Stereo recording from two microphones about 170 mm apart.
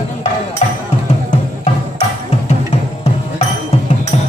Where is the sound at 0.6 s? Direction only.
40° left (ahead or behind).